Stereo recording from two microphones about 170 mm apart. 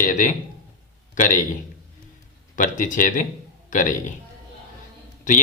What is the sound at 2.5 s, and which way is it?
Speech, 50° left (ahead or behind).